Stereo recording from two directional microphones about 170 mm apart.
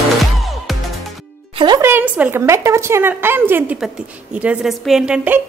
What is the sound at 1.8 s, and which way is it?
A woman's voice, 10° right (ahead or behind).